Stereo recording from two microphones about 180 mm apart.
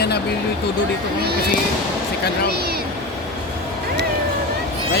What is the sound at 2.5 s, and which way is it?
Speech, 60° right (ahead or behind).